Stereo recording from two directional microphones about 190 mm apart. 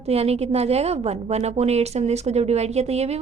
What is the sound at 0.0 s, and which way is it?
A woman's voice, 35° right (ahead or behind).